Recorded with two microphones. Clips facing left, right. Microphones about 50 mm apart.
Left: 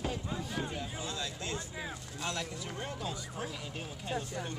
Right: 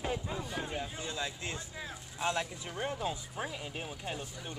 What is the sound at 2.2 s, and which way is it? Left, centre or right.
Speech, right.